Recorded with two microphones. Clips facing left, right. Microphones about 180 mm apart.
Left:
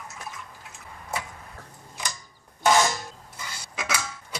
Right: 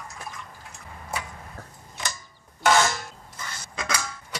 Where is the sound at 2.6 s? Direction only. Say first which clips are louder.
Even; 15° left (ahead or behind).